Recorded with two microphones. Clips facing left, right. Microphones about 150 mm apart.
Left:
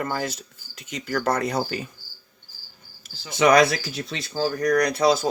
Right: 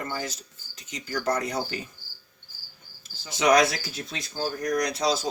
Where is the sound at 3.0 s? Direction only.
65° left (ahead or behind).